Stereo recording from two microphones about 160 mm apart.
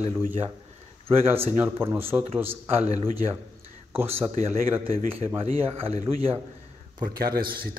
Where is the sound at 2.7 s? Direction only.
40° right (ahead or behind).